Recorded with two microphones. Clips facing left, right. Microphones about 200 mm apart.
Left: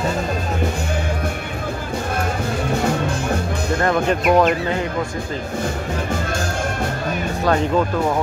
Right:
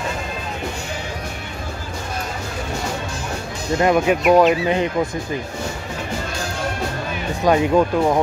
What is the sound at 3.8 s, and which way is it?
Speech, 15° right (ahead or behind).